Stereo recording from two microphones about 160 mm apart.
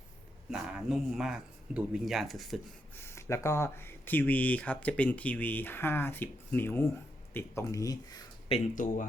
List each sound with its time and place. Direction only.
0.5 s speech: 5° right (ahead or behind)
3.0 s speech: 15° left (ahead or behind)
8.7 s speech: 55° left (ahead or behind)